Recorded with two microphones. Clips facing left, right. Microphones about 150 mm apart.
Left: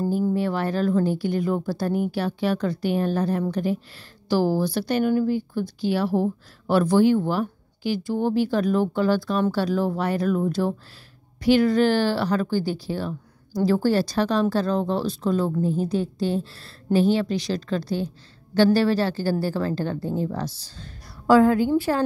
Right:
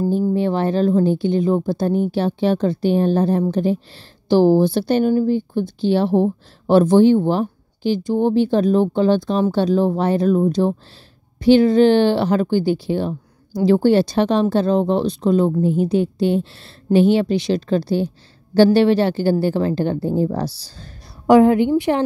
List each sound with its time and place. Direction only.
0.3 s speech: 25° right (ahead or behind)
15.6 s a woman's voice: 35° left (ahead or behind)
15.9 s speech: 25° right (ahead or behind)
21.3 s speech: 20° right (ahead or behind)